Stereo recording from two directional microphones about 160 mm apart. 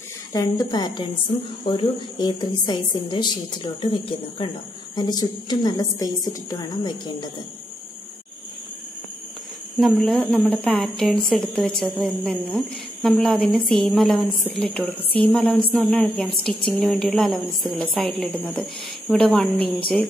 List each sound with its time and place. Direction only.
0.3 s a woman's voice: 20° left (ahead or behind)
4.9 s a woman's voice: 25° left (ahead or behind)
9.8 s a woman's voice: centre (ahead or behind)
15.2 s music: 5° left (ahead or behind)
15.7 s a woman's voice: 5° left (ahead or behind)